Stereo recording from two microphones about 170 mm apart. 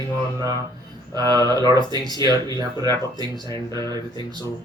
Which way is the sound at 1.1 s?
25° right (ahead or behind).